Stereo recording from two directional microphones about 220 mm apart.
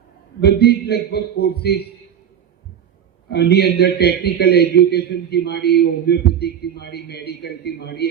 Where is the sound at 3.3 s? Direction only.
50° left (ahead or behind).